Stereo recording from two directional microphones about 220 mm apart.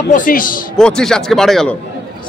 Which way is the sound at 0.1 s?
40° left (ahead or behind).